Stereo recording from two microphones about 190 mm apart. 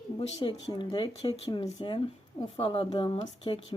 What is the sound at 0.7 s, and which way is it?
Speech, 25° left (ahead or behind).